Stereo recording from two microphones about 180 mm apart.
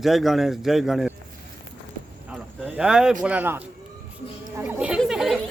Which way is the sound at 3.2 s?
10° right (ahead or behind).